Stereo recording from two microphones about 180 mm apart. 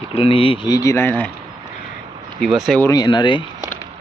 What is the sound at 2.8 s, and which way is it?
Speech, 20° left (ahead or behind).